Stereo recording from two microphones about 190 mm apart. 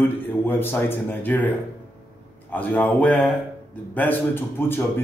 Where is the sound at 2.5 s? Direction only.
10° left (ahead or behind).